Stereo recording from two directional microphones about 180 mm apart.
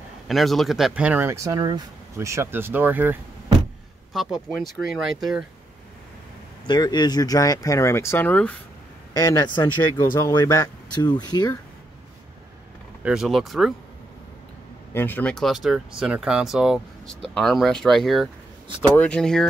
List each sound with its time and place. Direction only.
0.3 s speech: centre (ahead or behind)
4.1 s speech: centre (ahead or behind)
6.7 s speech: 25° left (ahead or behind); by 8.5 s 5° left (ahead or behind)
9.1 s speech: 20° left (ahead or behind)
13.0 s speech: 5° right (ahead or behind)
15.0 s speech: 10° left (ahead or behind)